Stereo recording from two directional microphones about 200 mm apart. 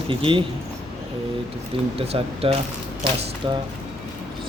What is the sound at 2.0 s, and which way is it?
Speech, 30° right (ahead or behind).